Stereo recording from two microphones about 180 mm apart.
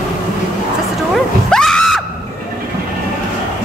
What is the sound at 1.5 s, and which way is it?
Screaming, 5° left (ahead or behind).